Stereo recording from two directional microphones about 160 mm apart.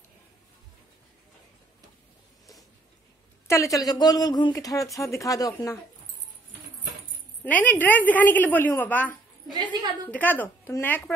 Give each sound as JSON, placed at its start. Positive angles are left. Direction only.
{"t": 3.4, "sound": "speech", "side_deg": 20}
{"t": 7.4, "sound": "a woman's voice", "side_deg": 10}
{"t": 9.5, "sound": "a woman's voice", "side_deg": -30}
{"t": 10.1, "sound": "a woman's voice", "side_deg": 10}